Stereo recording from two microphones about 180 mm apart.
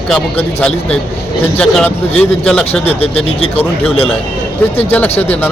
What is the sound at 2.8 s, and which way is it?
Speech, 35° left (ahead or behind).